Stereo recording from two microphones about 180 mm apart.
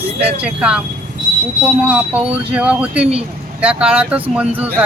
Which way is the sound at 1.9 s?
5° right (ahead or behind).